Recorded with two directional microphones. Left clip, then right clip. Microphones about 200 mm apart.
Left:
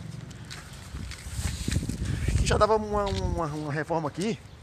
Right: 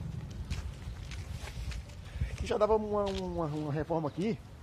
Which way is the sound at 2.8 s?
20° left (ahead or behind).